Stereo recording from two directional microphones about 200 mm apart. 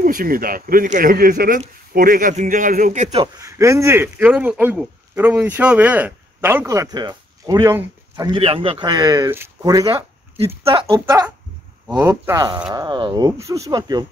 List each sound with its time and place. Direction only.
0.0 s speech: 45° right (ahead or behind)
3.3 s speech: 15° right (ahead or behind)
8.3 s speech: 25° right (ahead or behind)